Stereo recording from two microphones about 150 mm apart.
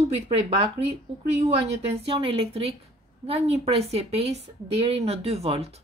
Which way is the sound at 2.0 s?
40° right (ahead or behind).